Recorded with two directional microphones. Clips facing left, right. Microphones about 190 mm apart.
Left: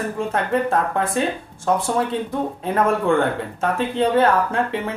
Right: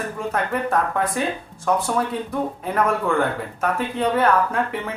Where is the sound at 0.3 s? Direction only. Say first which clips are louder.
Left 1 dB; 30° left (ahead or behind).